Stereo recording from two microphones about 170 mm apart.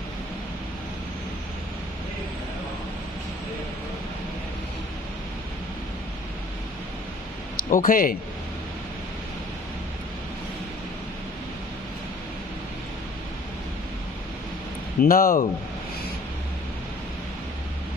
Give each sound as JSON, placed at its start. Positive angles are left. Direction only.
{"t": 7.7, "sound": "a man's voice", "side_deg": 55}
{"t": 15.0, "sound": "a man's voice", "side_deg": 55}